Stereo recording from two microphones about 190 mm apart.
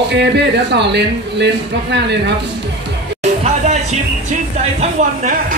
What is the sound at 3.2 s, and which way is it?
Music, 35° right (ahead or behind).